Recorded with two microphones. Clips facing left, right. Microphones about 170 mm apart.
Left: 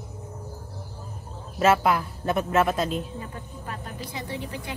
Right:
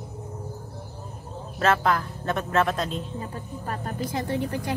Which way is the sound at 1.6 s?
10° left (ahead or behind).